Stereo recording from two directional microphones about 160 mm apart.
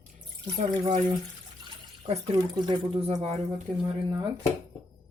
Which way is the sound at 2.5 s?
30° right (ahead or behind).